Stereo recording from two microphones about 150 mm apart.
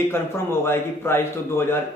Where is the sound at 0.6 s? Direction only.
15° left (ahead or behind).